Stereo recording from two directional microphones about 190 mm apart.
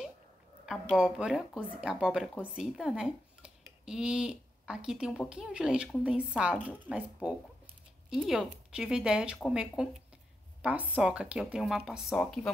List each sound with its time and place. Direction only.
0.7 s a woman's voice: 5° right (ahead or behind)